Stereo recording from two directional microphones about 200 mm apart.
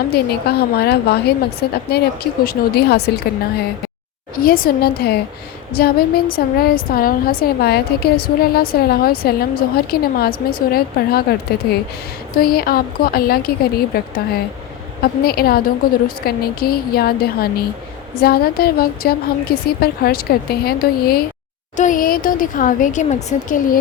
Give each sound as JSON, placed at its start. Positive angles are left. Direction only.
{"t": 0.1, "sound": "a woman's voice", "side_deg": 55}
{"t": 4.4, "sound": "a woman's voice", "side_deg": 45}